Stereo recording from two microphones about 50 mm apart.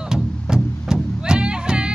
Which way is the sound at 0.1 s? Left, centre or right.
Centre.